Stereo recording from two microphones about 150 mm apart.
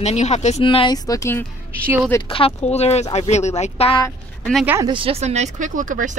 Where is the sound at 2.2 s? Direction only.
35° left (ahead or behind).